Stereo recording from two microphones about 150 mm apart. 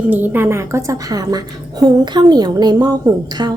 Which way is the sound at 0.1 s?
15° right (ahead or behind).